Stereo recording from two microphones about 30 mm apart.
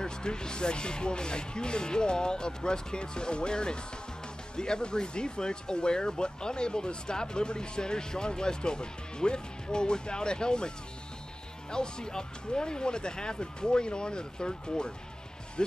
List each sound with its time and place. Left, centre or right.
0.0 s speech: left
11.7 s speech: left